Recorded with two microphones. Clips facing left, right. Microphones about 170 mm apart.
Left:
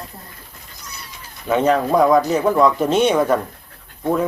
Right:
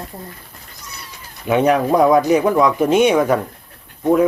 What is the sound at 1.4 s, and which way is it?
Speech, 15° right (ahead or behind).